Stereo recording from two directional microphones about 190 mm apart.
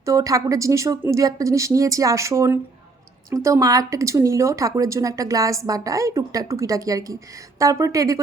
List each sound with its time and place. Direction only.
0.0 s speech: 15° right (ahead or behind)